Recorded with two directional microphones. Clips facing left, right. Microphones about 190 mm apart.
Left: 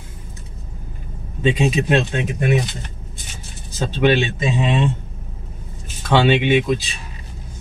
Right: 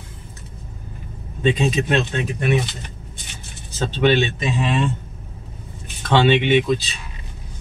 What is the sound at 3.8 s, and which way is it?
Speech, 10° left (ahead or behind).